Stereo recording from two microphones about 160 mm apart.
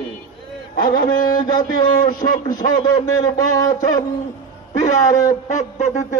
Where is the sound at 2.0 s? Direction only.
55° left (ahead or behind).